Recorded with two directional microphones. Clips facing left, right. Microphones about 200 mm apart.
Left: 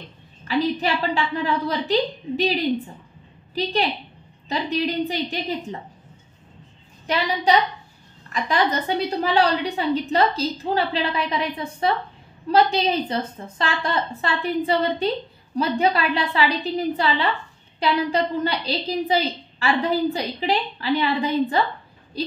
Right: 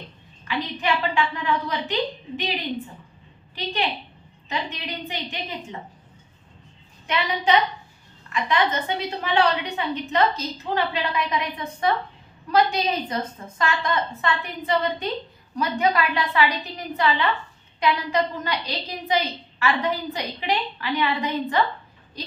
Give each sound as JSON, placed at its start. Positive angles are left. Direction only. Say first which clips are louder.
{"t": 0.5, "sound": "a woman's voice", "louder": "left 4 dB", "side_deg": 35}
{"t": 3.5, "sound": "a woman's voice", "louder": "left 4 dB", "side_deg": 35}
{"t": 7.1, "sound": "a woman's voice", "louder": "left 2 dB", "side_deg": 35}